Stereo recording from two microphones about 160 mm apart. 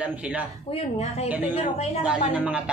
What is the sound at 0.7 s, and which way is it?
Speech, 40° left (ahead or behind).